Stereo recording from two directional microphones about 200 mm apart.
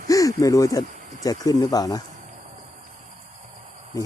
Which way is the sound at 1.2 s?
20° left (ahead or behind).